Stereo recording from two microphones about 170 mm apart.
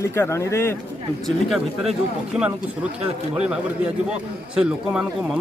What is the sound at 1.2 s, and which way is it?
Speech, centre (ahead or behind).